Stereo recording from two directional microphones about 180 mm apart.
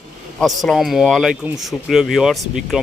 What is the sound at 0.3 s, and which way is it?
Speech, centre (ahead or behind).